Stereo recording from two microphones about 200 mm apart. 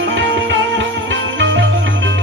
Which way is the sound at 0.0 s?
70° right (ahead or behind).